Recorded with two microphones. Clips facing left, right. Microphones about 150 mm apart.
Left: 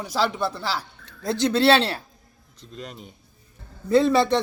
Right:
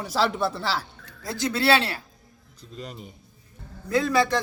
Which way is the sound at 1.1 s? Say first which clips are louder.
Left 7 dB; 25° left (ahead or behind).